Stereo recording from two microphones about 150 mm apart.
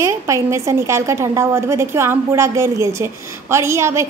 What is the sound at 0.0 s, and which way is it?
A woman's voice, 20° right (ahead or behind).